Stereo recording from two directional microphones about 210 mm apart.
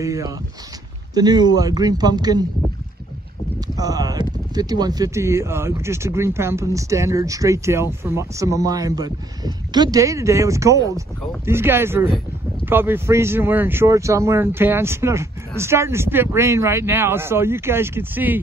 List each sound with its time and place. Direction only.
0.0 s a man's voice: 15° right (ahead or behind)
3.7 s speech: 15° right (ahead or behind)